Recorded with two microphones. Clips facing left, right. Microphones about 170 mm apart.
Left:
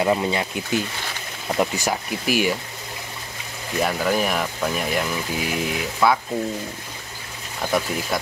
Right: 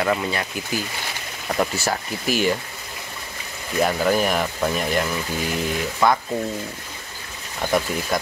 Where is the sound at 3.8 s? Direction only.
Centre (ahead or behind).